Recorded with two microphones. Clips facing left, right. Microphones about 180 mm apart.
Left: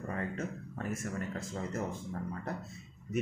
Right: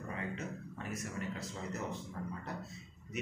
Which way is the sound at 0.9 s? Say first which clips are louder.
Even; 50° left (ahead or behind).